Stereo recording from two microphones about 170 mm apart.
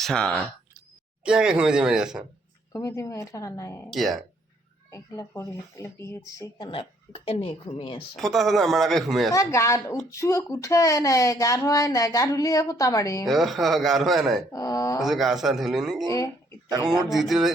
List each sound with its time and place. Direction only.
0.0 s speech: 5° left (ahead or behind)
2.7 s a woman's voice: 15° left (ahead or behind)
3.8 s speech: centre (ahead or behind)
4.9 s speech: 15° left (ahead or behind); by 8.0 s 35° left (ahead or behind)
8.1 s speech: centre (ahead or behind)
9.3 s a woman's voice: 15° left (ahead or behind)
13.2 s speech: centre (ahead or behind)
14.5 s speech: 20° left (ahead or behind)
15.0 s speech: centre (ahead or behind)
16.0 s speech: 20° left (ahead or behind)
17.1 s speech: centre (ahead or behind)